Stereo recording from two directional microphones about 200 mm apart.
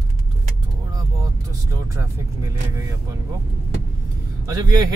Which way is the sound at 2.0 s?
15° right (ahead or behind).